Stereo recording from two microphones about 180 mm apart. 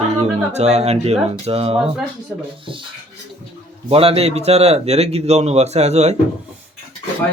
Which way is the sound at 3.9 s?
35° right (ahead or behind).